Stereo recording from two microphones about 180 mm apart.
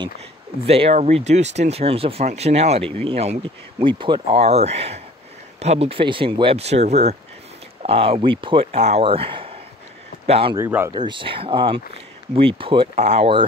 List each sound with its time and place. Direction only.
0.7 s speech: 35° right (ahead or behind)
10.5 s speech: 15° right (ahead or behind)
10.9 s speech: 25° right (ahead or behind)